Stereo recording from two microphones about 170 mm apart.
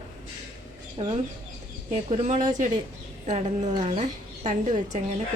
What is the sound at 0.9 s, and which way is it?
A woman's voice, 35° right (ahead or behind).